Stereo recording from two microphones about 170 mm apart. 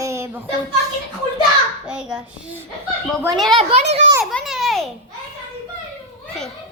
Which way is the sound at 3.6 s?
40° right (ahead or behind).